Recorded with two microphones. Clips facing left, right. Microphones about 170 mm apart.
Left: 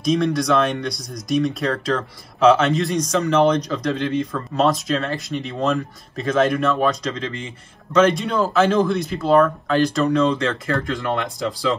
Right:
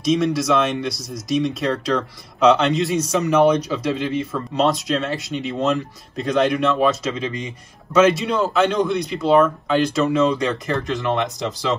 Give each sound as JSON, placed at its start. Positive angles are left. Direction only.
{"t": 0.0, "sound": "speech", "side_deg": 0}
{"t": 10.7, "sound": "speech", "side_deg": -20}